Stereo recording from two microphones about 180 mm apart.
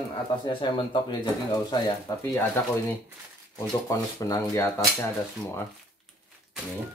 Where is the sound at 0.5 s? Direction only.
25° left (ahead or behind).